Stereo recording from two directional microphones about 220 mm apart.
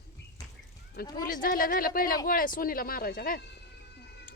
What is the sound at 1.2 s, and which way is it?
Speech, 40° left (ahead or behind).